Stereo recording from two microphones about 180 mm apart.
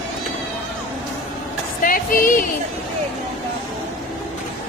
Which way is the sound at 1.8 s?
50° left (ahead or behind).